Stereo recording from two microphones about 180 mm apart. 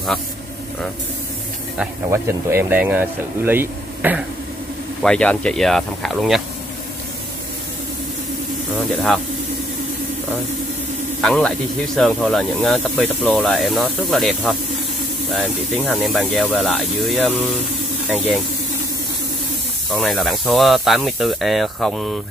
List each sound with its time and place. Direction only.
2.0 s speech: 15° right (ahead or behind)
5.0 s speech: 5° left (ahead or behind)
11.1 s speech: 5° left (ahead or behind)
19.9 s speech: centre (ahead or behind)